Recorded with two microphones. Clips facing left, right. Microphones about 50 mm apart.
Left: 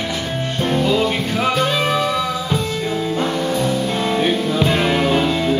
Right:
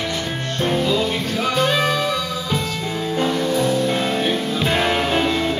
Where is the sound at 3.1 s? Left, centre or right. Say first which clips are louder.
Right 3 dB; centre.